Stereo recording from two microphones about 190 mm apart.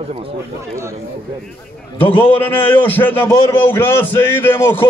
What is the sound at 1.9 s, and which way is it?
A man's voice, 10° left (ahead or behind).